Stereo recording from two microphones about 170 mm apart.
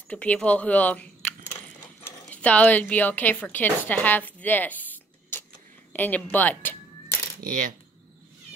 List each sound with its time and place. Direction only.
0.1 s a woman's voice: 5° left (ahead or behind)
7.4 s coin: 50° right (ahead or behind)